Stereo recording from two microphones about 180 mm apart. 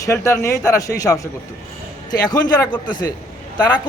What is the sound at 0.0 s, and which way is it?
A man's voice, 15° left (ahead or behind).